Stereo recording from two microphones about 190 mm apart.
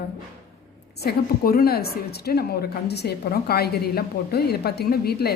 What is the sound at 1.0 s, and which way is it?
A woman's voice, 55° left (ahead or behind).